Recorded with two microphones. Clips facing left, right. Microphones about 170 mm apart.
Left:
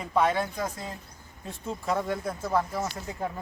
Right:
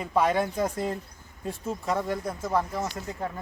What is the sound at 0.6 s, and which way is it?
Speech, 55° right (ahead or behind).